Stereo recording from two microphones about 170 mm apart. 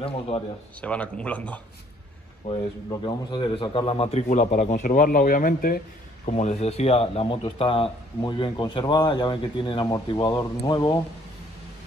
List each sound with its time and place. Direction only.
0.0 s speech: 35° left (ahead or behind)
0.7 s speech: 5° left (ahead or behind)
2.4 s speech: 35° left (ahead or behind)
2.9 s a man's voice: 25° left (ahead or behind); by 5.8 s 55° left (ahead or behind)
6.2 s speech: 40° left (ahead or behind); by 10.4 s 25° left (ahead or behind)